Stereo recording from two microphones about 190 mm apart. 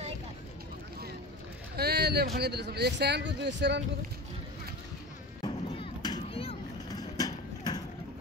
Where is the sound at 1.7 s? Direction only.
55° right (ahead or behind).